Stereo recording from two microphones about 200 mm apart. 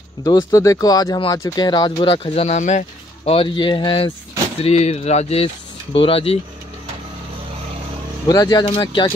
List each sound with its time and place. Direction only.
0.2 s speech: 20° left (ahead or behind)
8.3 s speech: 20° left (ahead or behind)